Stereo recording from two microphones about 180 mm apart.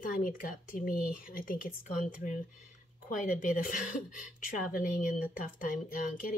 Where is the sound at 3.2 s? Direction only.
50° left (ahead or behind).